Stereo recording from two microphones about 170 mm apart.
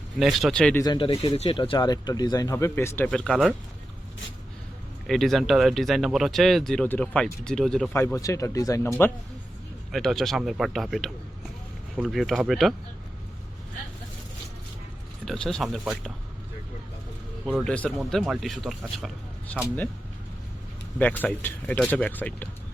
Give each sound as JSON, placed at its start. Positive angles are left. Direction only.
{"t": 0.2, "sound": "speech", "side_deg": 0}
{"t": 0.8, "sound": "speech", "side_deg": 25}
{"t": 5.0, "sound": "speech", "side_deg": 0}
{"t": 7.9, "sound": "speech", "side_deg": 15}
{"t": 9.9, "sound": "speech", "side_deg": 0}
{"t": 15.2, "sound": "speech", "side_deg": 5}
{"t": 17.6, "sound": "speech", "side_deg": 5}
{"t": 21.0, "sound": "speech", "side_deg": 10}